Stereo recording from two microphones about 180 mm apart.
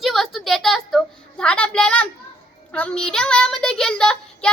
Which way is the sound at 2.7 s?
5° left (ahead or behind).